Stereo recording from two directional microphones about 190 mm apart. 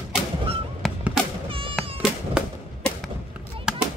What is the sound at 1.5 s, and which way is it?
Baby cry, 30° right (ahead or behind).